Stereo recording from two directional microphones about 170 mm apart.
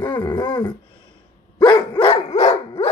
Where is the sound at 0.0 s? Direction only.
30° left (ahead or behind).